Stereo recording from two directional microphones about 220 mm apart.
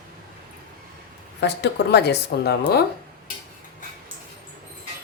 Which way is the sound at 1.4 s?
50° left (ahead or behind).